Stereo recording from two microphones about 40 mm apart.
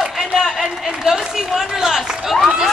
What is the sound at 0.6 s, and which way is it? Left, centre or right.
A man's voice, centre.